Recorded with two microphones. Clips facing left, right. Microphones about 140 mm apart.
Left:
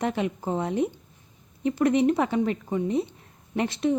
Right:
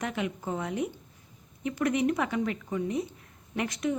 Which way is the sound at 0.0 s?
30° left (ahead or behind).